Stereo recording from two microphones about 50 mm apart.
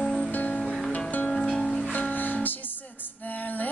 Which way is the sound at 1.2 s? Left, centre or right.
Centre.